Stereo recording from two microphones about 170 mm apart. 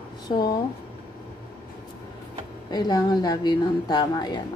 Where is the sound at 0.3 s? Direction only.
30° left (ahead or behind).